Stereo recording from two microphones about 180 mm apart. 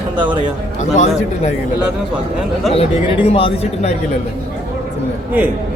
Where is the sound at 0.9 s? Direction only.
40° left (ahead or behind).